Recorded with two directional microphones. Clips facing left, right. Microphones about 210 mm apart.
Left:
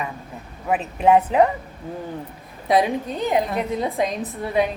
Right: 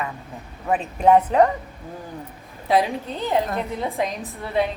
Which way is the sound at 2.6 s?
20° left (ahead or behind).